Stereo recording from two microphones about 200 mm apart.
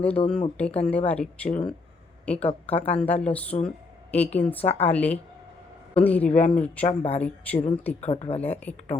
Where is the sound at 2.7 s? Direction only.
30° left (ahead or behind).